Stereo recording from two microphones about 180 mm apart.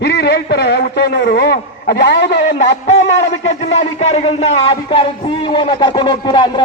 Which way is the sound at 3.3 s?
40° left (ahead or behind).